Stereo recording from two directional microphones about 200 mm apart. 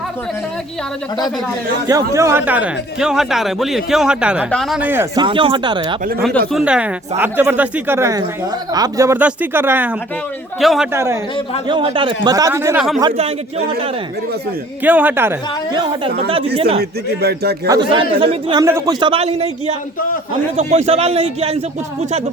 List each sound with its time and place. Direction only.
1.9 s speech: 15° right (ahead or behind)
5.2 s a man's voice: 25° right (ahead or behind)
6.5 s speech: 5° right (ahead or behind)
10.9 s speech: 15° right (ahead or behind)
11.7 s speech: 25° right (ahead or behind)
13.0 s a man's voice: 30° right (ahead or behind)
14.8 s speech: 10° right (ahead or behind)
15.8 s a man's voice: 30° right (ahead or behind)
17.2 s speech: 55° right (ahead or behind)
17.7 s a man's voice: 25° right (ahead or behind)
18.6 s a man's voice: 15° right (ahead or behind)